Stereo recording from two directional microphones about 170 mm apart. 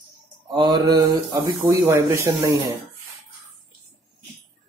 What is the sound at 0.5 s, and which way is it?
Speech, 25° right (ahead or behind).